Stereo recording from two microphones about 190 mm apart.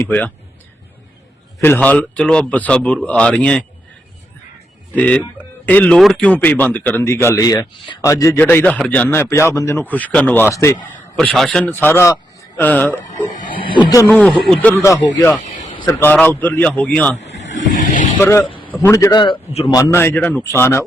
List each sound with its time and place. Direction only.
0.0 s speech: 10° left (ahead or behind)
1.6 s a man's voice: 10° left (ahead or behind)
4.9 s speech: 5° left (ahead or behind)
13.3 s speech: 45° left (ahead or behind)
13.7 s speech: 20° left (ahead or behind); by 17.2 s 5° left (ahead or behind)
17.5 s vehicle: 40° left (ahead or behind)
18.2 s speech: 15° left (ahead or behind)
19.8 s speech: 10° left (ahead or behind)